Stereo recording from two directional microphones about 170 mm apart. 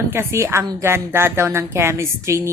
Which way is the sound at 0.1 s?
15° right (ahead or behind).